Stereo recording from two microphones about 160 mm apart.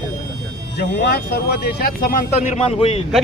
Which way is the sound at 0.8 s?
90° left.